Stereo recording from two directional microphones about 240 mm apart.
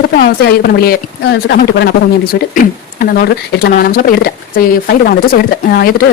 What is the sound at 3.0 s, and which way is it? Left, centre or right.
Speech, left.